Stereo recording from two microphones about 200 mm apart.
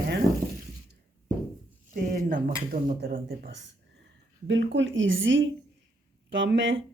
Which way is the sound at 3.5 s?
60° right (ahead or behind).